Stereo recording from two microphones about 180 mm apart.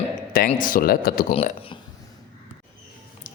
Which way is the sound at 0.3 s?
50° left (ahead or behind).